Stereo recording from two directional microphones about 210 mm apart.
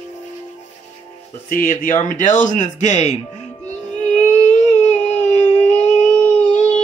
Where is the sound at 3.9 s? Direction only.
35° left (ahead or behind).